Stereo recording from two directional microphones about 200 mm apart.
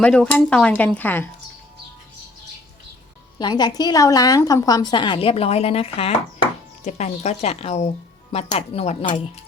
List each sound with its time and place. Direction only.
0.0 s speech: 5° left (ahead or behind)
3.3 s a woman's voice: 20° left (ahead or behind)